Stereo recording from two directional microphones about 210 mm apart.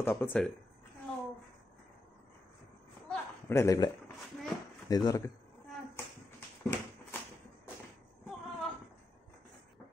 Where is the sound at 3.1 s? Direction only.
10° left (ahead or behind).